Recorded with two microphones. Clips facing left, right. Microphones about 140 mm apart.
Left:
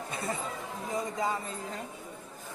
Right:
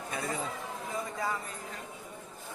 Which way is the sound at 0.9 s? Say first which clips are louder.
Left 3 dB; 20° left (ahead or behind).